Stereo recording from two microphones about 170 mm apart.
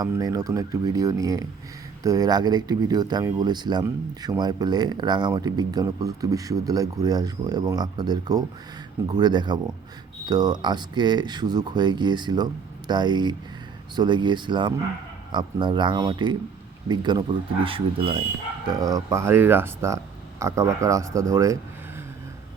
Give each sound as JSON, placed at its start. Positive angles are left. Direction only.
{"t": 0.0, "sound": "speech", "side_deg": -20}
{"t": 18.8, "sound": "speech", "side_deg": -20}